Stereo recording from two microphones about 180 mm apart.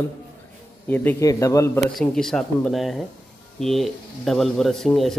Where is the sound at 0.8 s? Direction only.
10° left (ahead or behind).